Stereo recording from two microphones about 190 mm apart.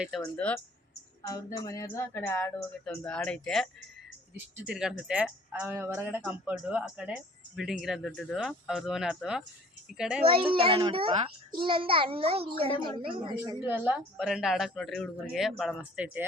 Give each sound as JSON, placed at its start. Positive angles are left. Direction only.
{"t": 0.0, "sound": "a woman's voice", "side_deg": 5}
{"t": 1.3, "sound": "speech", "side_deg": 20}
{"t": 4.7, "sound": "a woman's voice", "side_deg": -5}
{"t": 10.2, "sound": "a child's voice", "side_deg": -30}
{"t": 13.6, "sound": "a woman's voice", "side_deg": -5}